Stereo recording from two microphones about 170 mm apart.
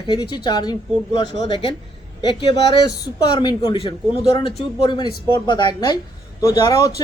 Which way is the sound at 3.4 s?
25° left (ahead or behind).